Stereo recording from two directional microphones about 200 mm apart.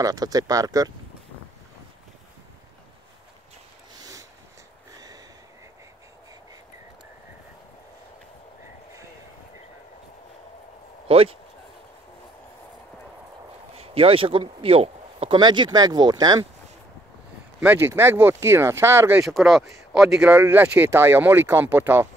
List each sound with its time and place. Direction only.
0.0 s speech: 20° right (ahead or behind)
4.0 s a sound: 15° right (ahead or behind)
11.1 s speech: 30° right (ahead or behind)
13.7 s speech: 30° right (ahead or behind)
17.6 s speech: 10° right (ahead or behind)